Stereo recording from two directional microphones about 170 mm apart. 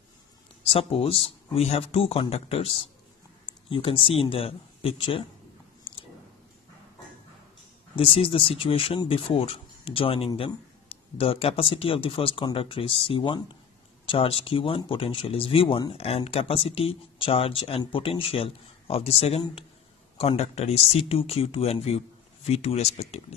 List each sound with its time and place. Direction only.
0.7 s speech: 35° left (ahead or behind)
7.9 s speech: 35° left (ahead or behind)